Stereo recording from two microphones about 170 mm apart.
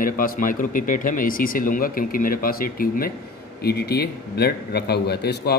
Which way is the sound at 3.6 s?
70° left (ahead or behind).